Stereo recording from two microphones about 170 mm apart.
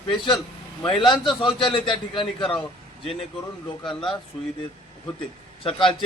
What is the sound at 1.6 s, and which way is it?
Speech, 30° left (ahead or behind).